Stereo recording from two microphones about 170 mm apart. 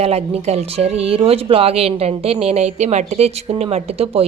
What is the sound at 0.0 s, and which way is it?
Speech, 35° right (ahead or behind).